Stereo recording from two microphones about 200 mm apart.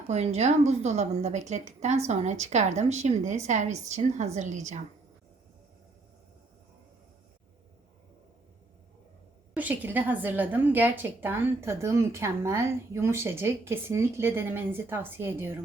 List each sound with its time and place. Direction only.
0.1 s a woman's voice: 35° right (ahead or behind)
9.6 s a woman's voice: 10° right (ahead or behind)